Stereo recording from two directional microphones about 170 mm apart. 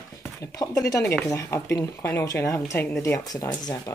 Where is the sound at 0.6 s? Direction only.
20° left (ahead or behind).